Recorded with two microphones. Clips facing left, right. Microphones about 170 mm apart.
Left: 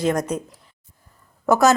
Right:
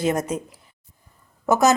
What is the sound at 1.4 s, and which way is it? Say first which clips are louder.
Speech: left 1 dB; 20° right (ahead or behind).